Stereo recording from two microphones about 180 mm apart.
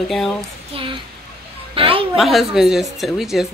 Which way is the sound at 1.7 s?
30° right (ahead or behind).